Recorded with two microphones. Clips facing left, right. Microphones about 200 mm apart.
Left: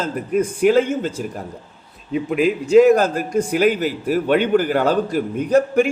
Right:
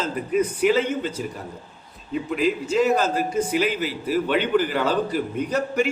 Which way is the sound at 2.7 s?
50° left (ahead or behind).